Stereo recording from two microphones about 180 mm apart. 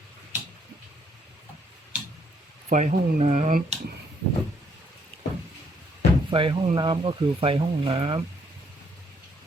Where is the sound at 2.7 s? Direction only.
45° right (ahead or behind).